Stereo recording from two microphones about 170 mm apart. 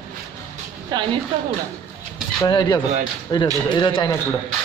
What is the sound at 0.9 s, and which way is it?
Speech, 25° right (ahead or behind).